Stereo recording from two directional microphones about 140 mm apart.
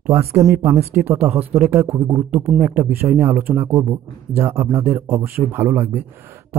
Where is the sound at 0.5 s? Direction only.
15° right (ahead or behind).